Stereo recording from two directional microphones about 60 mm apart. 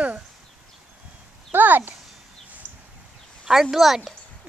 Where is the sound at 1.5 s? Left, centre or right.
Right.